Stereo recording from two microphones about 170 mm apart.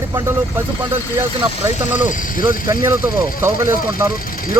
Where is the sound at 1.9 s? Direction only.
50° left (ahead or behind).